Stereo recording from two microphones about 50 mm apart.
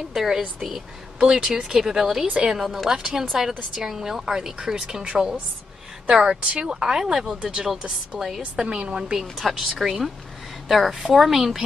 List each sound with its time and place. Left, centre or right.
0.1 s a woman's voice: centre
6.0 s a woman's voice: centre
9.4 s a woman's voice: centre